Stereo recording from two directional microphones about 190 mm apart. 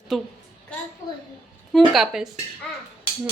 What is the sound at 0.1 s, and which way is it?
Speech, centre (ahead or behind).